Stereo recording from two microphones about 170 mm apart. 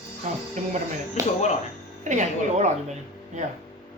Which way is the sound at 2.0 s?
45° right (ahead or behind).